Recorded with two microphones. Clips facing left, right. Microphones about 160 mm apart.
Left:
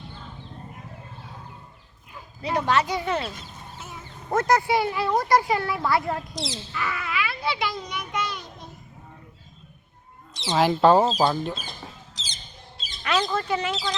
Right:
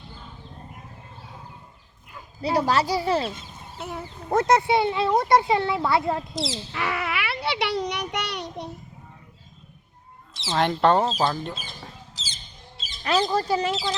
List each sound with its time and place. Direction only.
2.4 s speech: 35° right (ahead or behind)
3.8 s speech: 65° right (ahead or behind)
4.4 s speech: 20° right (ahead or behind)
6.3 s speech: centre (ahead or behind)
6.7 s a sound: 70° right (ahead or behind)
10.3 s chicken: centre (ahead or behind)
13.0 s speech: 35° right (ahead or behind)